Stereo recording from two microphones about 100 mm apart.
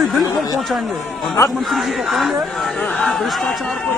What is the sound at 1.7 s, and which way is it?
Speech, centre (ahead or behind).